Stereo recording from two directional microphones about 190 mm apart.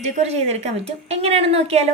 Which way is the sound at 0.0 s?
35° right (ahead or behind).